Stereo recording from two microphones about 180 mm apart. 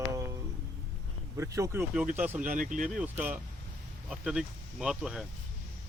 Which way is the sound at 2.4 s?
45° right (ahead or behind).